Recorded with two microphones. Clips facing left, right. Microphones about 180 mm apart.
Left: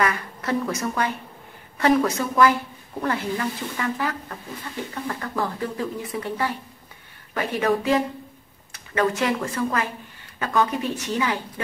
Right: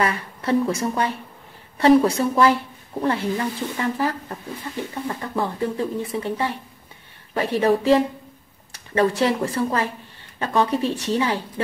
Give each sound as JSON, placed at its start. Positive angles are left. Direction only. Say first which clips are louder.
{"t": 0.0, "sound": "a woman's voice", "louder": "right 1 dB", "side_deg": -30}